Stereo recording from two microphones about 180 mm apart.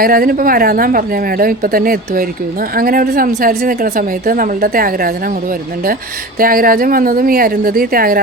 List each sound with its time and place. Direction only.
0.0 s a woman's voice: 55° right (ahead or behind)
6.4 s a woman's voice: 55° right (ahead or behind)